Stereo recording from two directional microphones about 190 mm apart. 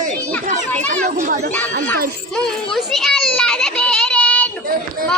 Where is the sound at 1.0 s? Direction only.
45° right (ahead or behind).